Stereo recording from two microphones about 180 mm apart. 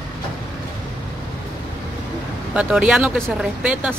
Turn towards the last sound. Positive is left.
turn(degrees=-10)  # may be behind; listen again after turning